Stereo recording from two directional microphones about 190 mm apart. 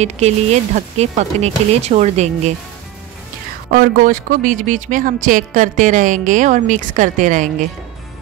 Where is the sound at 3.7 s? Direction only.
50° right (ahead or behind).